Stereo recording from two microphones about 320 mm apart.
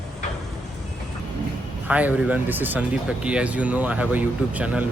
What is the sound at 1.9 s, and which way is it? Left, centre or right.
Speech, centre.